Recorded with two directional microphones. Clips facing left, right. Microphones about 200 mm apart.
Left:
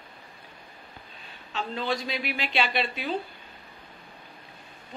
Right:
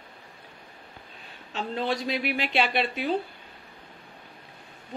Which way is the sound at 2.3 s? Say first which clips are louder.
Right 1 dB; 55° right (ahead or behind).